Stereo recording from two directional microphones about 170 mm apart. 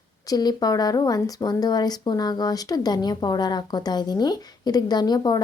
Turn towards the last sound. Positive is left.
turn(degrees=25)  # may be behind; listen again after turning